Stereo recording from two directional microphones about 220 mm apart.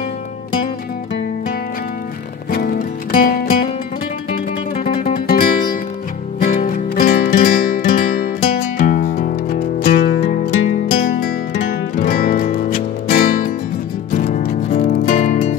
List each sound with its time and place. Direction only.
2.5 s music: 45° left (ahead or behind)
6.4 s music: 40° left (ahead or behind)